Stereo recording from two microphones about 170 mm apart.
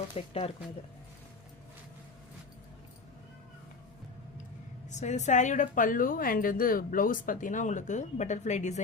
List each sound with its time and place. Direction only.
0.1 s speech: 35° left (ahead or behind)
4.9 s a woman's voice: 45° left (ahead or behind)